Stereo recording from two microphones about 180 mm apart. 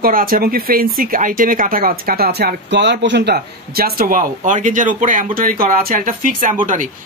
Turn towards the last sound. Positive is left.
turn(degrees=-45)  # may be behind; listen again after turning